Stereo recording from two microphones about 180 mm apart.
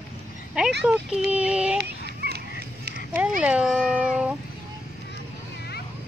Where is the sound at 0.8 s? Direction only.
5° right (ahead or behind).